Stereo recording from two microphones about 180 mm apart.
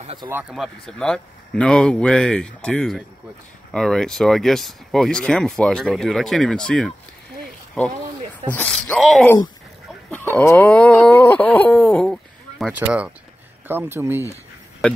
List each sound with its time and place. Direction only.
0.0 s speech: 30° right (ahead or behind)
0.3 s speech: 5° right (ahead or behind)
8.5 s speech: 5° left (ahead or behind); by 14.2 s 10° right (ahead or behind)